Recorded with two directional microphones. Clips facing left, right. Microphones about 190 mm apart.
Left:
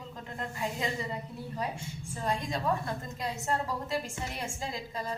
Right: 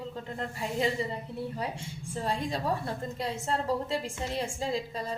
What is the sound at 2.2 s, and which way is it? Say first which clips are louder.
A woman's voice: even; 30° right (ahead or behind).